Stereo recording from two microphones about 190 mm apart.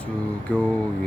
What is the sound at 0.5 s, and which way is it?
Mantra, 5° left (ahead or behind).